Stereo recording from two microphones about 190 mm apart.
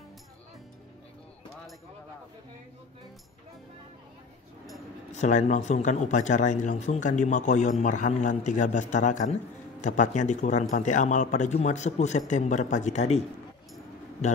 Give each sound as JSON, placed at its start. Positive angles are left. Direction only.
{"t": 5.1, "sound": "a man's voice", "side_deg": 40}